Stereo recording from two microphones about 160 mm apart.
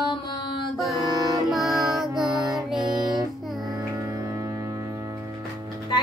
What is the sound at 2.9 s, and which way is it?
Child singing, 25° right (ahead or behind).